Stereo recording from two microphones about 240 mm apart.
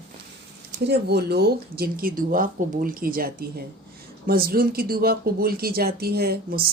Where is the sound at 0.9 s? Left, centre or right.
Right.